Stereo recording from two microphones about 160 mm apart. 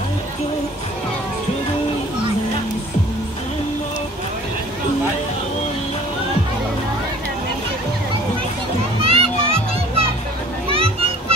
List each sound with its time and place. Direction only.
9.0 s music: 40° right (ahead or behind)
10.7 s children playing: 35° right (ahead or behind)